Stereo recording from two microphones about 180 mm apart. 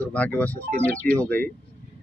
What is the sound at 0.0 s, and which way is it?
Speech, 10° left (ahead or behind).